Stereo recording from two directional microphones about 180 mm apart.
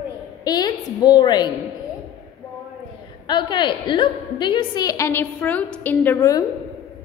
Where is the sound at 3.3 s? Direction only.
25° left (ahead or behind).